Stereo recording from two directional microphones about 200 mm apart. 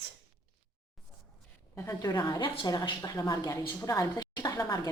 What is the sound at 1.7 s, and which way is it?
A woman's voice, 10° left (ahead or behind).